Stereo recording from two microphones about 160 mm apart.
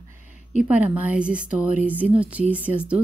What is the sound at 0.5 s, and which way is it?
A woman's voice, 10° right (ahead or behind).